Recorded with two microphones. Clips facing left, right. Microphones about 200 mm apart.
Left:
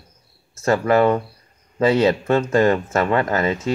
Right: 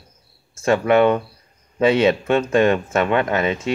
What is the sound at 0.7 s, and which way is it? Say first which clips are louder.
Speech: right 1 dB; centre (ahead or behind).